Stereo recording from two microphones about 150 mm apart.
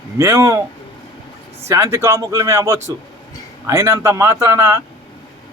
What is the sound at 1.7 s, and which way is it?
Speech, 20° right (ahead or behind).